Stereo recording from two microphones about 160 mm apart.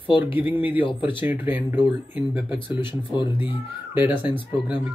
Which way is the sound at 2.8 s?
30° left (ahead or behind).